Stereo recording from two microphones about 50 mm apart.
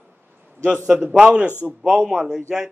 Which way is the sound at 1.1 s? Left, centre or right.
Centre.